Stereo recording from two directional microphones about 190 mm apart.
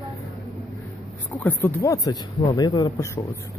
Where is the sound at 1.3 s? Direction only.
10° left (ahead or behind).